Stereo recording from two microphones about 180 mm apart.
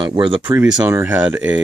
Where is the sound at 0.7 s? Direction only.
15° right (ahead or behind).